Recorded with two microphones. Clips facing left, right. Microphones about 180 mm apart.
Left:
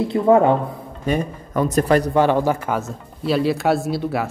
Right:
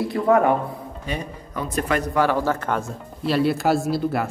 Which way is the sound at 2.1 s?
20° left (ahead or behind).